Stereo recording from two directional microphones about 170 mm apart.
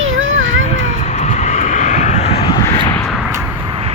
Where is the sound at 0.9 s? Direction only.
45° left (ahead or behind).